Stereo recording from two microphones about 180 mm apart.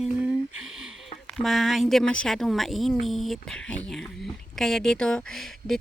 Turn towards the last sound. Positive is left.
turn(degrees=0)  # may be behind; listen again after turning